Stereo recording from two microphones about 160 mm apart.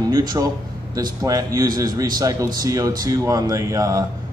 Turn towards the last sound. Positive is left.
turn(degrees=-20)  # may be behind; listen again after turning